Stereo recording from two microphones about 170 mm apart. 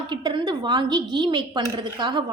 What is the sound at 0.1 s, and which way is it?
A woman's voice, 25° right (ahead or behind).